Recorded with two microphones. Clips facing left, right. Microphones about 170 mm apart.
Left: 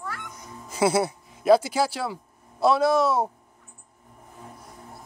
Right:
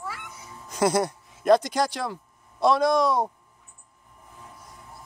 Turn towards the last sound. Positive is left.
turn(degrees=5)  # may be behind; listen again after turning